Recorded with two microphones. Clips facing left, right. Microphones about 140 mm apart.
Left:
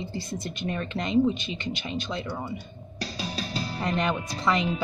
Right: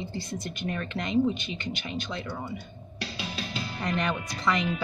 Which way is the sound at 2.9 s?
40° left (ahead or behind).